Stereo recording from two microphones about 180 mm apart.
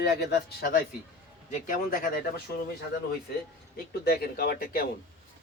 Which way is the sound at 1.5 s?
50° left (ahead or behind).